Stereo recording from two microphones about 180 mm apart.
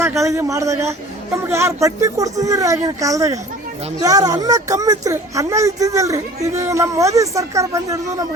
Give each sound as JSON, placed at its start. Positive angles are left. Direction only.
{"t": 0.0, "sound": "speech", "side_deg": -15}